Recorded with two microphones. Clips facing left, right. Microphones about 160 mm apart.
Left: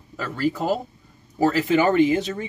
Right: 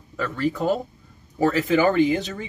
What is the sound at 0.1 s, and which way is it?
Speech, 5° left (ahead or behind).